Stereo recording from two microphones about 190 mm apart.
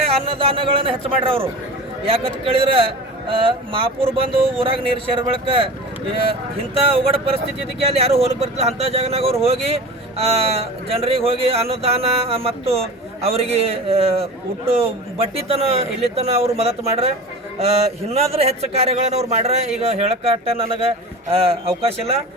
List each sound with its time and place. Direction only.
0.0 s a man's voice: 30° right (ahead or behind)
6.8 s a man's voice: 30° right (ahead or behind)